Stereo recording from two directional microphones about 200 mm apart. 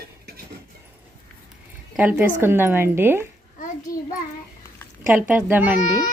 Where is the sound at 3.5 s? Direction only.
40° left (ahead or behind).